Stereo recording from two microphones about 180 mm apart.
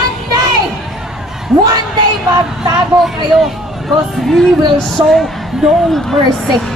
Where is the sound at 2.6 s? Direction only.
25° right (ahead or behind).